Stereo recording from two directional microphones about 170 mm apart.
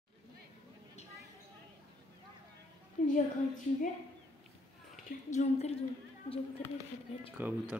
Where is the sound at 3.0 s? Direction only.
45° left (ahead or behind).